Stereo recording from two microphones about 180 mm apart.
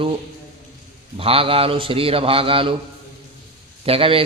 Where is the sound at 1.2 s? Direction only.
30° right (ahead or behind).